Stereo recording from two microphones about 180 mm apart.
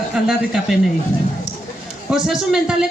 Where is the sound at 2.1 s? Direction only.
5° right (ahead or behind).